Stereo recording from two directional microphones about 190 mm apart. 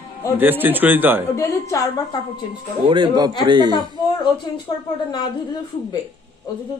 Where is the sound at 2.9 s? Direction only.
25° right (ahead or behind).